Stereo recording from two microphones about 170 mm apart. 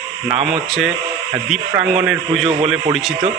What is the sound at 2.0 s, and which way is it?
Speech, centre (ahead or behind).